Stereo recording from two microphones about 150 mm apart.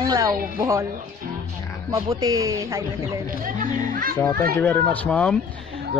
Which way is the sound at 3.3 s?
60° right (ahead or behind).